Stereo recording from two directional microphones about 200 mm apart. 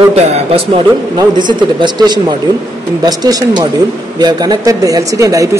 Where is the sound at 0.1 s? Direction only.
30° right (ahead or behind).